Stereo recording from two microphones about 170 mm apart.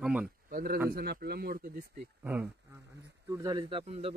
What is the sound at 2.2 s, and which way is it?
Speech, 10° right (ahead or behind).